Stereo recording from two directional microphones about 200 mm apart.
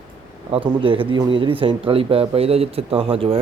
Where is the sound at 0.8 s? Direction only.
25° right (ahead or behind).